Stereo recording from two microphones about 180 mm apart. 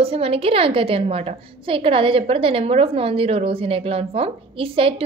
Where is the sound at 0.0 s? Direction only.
35° right (ahead or behind).